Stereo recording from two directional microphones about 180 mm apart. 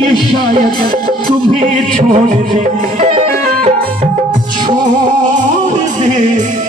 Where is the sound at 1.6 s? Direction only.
45° right (ahead or behind).